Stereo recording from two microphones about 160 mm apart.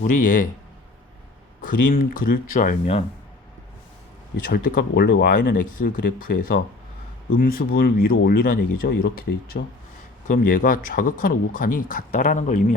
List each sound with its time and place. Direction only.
0.0 s speech: 55° left (ahead or behind)
1.6 s speech: 60° left (ahead or behind)
4.4 s speech: 60° left (ahead or behind)